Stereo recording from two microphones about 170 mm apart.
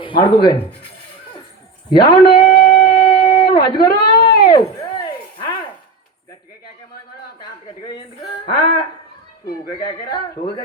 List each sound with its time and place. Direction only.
0.0 s speech: 30° left (ahead or behind)
1.9 s speech: 25° left (ahead or behind)
2.5 s wind instrument: 50° left (ahead or behind)
3.5 s a sound: 25° left (ahead or behind)
8.4 s speech: 25° left (ahead or behind)